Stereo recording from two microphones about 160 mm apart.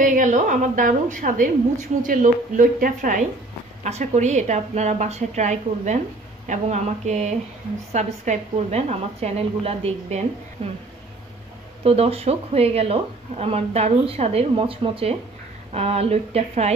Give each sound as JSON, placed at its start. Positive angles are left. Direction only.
{"t": 0.0, "sound": "a woman's voice", "side_deg": -55}
{"t": 11.8, "sound": "speech", "side_deg": -40}